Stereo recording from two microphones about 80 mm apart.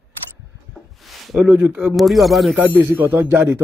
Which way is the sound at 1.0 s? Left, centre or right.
Centre.